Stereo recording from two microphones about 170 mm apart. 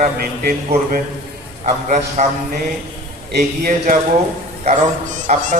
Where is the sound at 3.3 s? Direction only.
60° right (ahead or behind).